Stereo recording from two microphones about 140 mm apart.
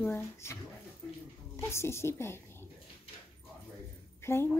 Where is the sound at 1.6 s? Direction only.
20° left (ahead or behind).